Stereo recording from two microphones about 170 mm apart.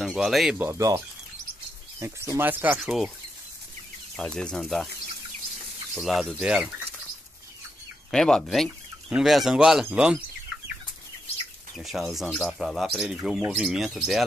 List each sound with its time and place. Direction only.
0.0 s speech: centre (ahead or behind)
0.7 s speech: 20° right (ahead or behind)
4.2 s speech: 5° left (ahead or behind)
5.9 s speech: centre (ahead or behind)
8.1 s speech: 5° left (ahead or behind)
11.7 s speech: centre (ahead or behind)